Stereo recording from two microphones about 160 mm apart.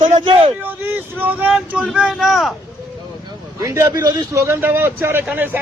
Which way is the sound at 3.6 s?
20° right (ahead or behind).